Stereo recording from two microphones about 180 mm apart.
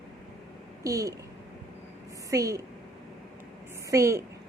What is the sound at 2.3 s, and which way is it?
Speech, 20° right (ahead or behind).